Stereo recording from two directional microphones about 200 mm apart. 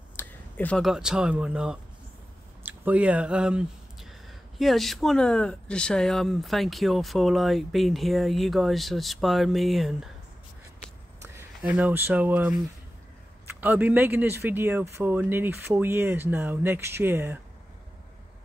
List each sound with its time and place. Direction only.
0.1 s speech: 10° left (ahead or behind)
11.2 s speech: 10° right (ahead or behind)